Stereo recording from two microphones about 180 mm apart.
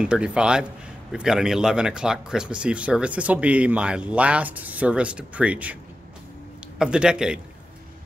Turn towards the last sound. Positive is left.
turn(degrees=-5)  # may be behind; listen again after turning